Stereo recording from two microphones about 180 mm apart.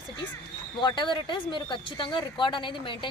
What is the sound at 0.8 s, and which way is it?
Speech, 25° left (ahead or behind).